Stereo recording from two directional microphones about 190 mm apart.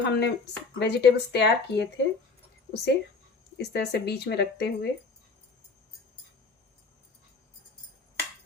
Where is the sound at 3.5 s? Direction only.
60° left (ahead or behind).